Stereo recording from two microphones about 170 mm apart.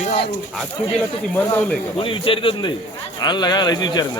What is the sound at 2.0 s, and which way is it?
Speech, 30° left (ahead or behind).